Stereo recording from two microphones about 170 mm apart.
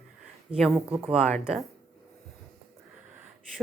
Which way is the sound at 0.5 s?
Centre (ahead or behind).